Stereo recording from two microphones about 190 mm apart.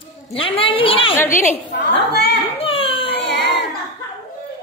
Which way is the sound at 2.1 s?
60° left (ahead or behind).